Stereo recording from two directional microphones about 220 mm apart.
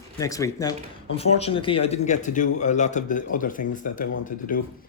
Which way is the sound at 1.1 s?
25° left (ahead or behind).